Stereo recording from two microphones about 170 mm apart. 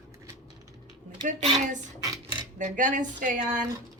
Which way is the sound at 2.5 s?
50° right (ahead or behind).